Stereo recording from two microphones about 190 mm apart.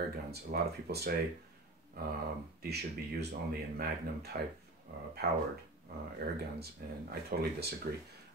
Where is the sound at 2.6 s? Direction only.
60° right (ahead or behind).